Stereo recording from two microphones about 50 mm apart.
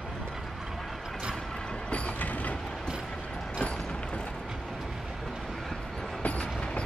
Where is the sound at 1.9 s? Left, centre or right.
Left.